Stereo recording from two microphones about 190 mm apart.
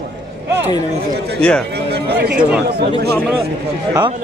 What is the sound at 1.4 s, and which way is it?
Speech, 5° left (ahead or behind).